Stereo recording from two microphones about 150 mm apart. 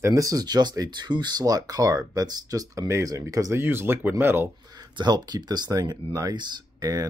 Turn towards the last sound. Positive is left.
turn(degrees=-25)  # may be behind; listen again after turning